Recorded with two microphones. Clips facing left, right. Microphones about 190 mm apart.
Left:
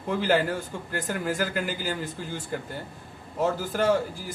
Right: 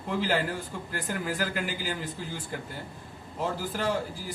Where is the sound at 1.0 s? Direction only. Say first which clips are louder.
Left 3 dB; 45° left (ahead or behind).